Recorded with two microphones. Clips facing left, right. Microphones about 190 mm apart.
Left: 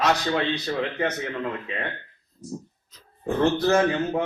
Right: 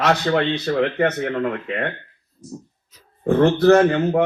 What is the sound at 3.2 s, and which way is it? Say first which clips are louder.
Speech: right 7 dB; 60° right (ahead or behind).